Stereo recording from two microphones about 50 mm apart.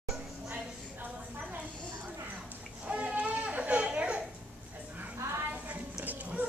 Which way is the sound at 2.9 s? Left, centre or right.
Right.